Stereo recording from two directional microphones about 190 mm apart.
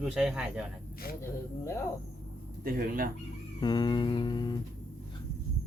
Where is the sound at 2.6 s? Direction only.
50° right (ahead or behind).